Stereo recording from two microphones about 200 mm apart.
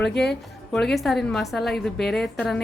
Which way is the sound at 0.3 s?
Centre (ahead or behind).